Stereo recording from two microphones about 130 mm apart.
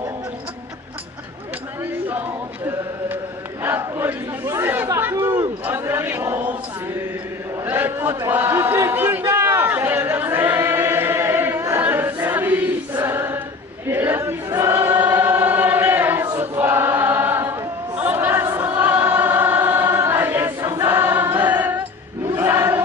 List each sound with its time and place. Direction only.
3.6 s battle cry: 15° right (ahead or behind)
4.8 s chatter: 25° right (ahead or behind)
5.7 s chant: 15° right (ahead or behind)
7.6 s a sound: 15° right (ahead or behind)
13.8 s chatter: 15° right (ahead or behind)
14.5 s choir: 20° right (ahead or behind)
16.3 s chant: 20° right (ahead or behind)
22.3 s a sound: 15° right (ahead or behind)